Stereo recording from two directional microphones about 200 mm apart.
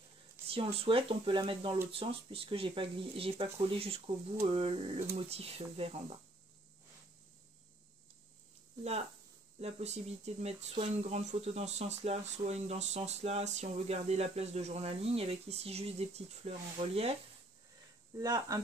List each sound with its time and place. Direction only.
0.5 s speech: 30° right (ahead or behind)
9.6 s speech: 30° right (ahead or behind)
18.1 s speech: 20° right (ahead or behind)